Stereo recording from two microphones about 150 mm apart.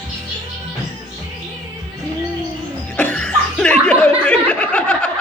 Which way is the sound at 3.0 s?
5° left (ahead or behind).